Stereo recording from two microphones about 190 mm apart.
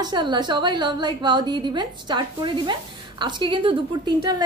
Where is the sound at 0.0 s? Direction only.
25° right (ahead or behind).